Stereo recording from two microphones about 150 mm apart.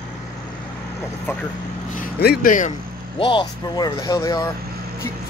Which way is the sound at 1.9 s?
80° left.